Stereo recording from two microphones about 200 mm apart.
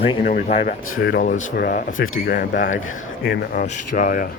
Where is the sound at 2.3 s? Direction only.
45° left (ahead or behind).